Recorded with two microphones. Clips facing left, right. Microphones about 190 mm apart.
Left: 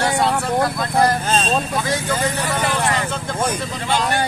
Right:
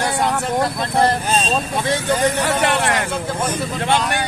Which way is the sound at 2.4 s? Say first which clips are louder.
Right 3 dB; 70° right (ahead or behind).